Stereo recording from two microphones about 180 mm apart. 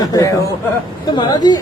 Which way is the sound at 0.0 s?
20° left (ahead or behind).